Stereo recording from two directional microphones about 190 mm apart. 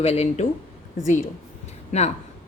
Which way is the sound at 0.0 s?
35° left (ahead or behind).